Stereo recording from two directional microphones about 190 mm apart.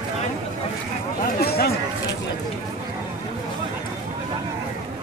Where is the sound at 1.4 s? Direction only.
55° left (ahead or behind).